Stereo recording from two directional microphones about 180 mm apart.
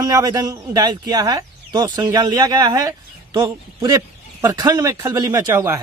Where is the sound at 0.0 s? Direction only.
20° right (ahead or behind).